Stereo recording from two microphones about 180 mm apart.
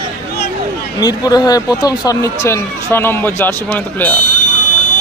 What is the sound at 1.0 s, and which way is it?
Speech, 20° left (ahead or behind).